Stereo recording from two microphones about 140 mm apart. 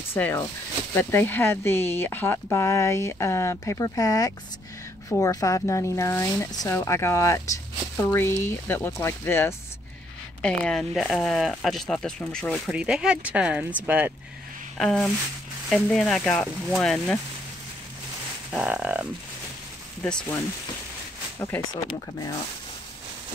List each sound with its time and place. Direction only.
0.1 s speech: 15° left (ahead or behind)
10.4 s speech: 5° left (ahead or behind)
12.7 s speech: 5° right (ahead or behind)
14.8 s speech: 5° left (ahead or behind)
18.5 s speech: 10° right (ahead or behind)
20.0 s speech: 5° left (ahead or behind)
21.4 s speech: 20° left (ahead or behind)